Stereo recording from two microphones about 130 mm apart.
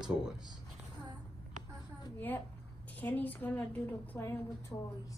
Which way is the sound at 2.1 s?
15° left (ahead or behind).